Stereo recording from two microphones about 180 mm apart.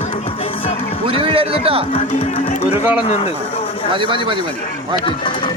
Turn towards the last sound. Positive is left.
turn(degrees=-30)  # may be behind; listen again after turning